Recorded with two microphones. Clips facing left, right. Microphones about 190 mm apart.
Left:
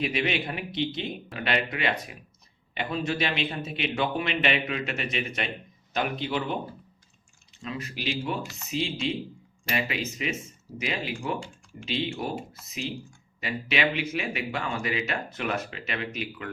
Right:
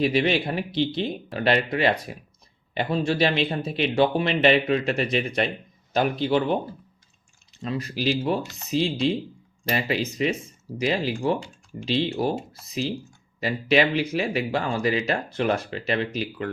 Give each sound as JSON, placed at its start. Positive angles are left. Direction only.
{"t": 0.0, "sound": "speech", "side_deg": -35}
{"t": 7.6, "sound": "speech", "side_deg": -35}